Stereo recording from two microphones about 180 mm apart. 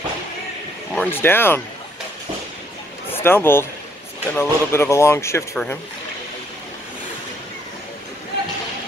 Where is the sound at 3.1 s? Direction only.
10° left (ahead or behind).